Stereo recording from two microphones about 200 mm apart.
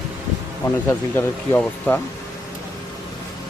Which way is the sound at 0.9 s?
10° left (ahead or behind).